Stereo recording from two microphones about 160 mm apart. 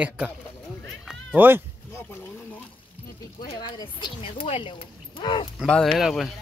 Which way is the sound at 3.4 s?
30° left (ahead or behind).